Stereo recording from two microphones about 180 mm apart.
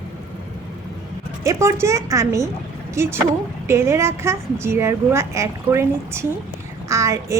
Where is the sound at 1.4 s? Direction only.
15° right (ahead or behind).